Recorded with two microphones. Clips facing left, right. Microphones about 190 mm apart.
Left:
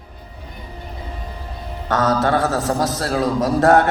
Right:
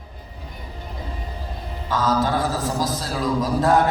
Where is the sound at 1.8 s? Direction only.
70° left (ahead or behind).